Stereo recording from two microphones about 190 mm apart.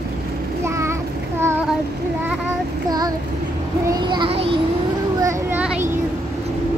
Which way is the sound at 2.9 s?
20° right (ahead or behind).